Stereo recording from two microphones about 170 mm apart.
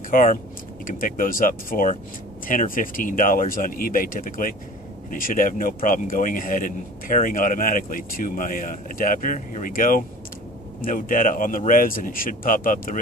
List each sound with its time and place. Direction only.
0.1 s a man's voice: 55° left (ahead or behind)